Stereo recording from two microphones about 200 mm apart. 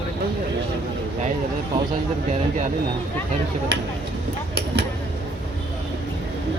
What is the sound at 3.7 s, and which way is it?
Speech, 55° right (ahead or behind).